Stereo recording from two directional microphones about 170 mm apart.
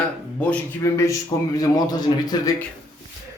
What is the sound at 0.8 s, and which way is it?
A man's voice, 20° left (ahead or behind).